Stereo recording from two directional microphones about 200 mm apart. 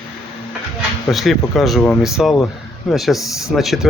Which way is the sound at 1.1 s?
Centre (ahead or behind).